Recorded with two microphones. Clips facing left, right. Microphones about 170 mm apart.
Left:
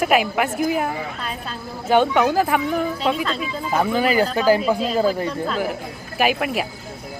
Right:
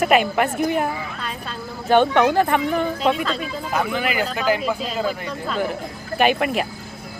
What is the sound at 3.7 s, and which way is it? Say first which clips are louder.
A man's voice: left 4 dB; 35° left (ahead or behind).